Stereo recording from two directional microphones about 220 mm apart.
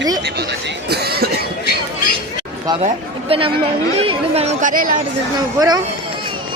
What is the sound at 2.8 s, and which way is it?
Speech, 25° right (ahead or behind).